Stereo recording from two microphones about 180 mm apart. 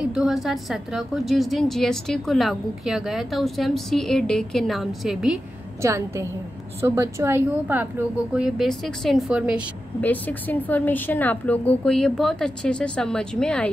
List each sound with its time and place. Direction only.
0.1 s a woman's voice: centre (ahead or behind)
5.8 s a woman's voice: 15° right (ahead or behind)
8.4 s a woman's voice: centre (ahead or behind)
10.0 s a woman's voice: 10° left (ahead or behind)